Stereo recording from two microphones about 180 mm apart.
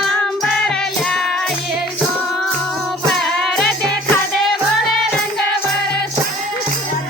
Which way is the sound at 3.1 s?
5° left (ahead or behind).